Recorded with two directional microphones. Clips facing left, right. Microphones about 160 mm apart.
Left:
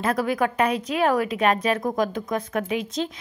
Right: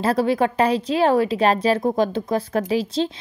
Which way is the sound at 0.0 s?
30° right (ahead or behind).